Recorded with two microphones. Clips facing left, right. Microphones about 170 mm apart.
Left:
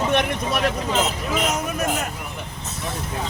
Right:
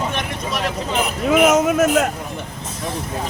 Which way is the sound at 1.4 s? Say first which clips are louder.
Right 11 dB; 90° right.